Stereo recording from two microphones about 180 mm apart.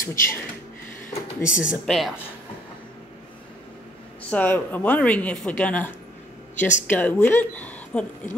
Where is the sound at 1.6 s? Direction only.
Centre (ahead or behind).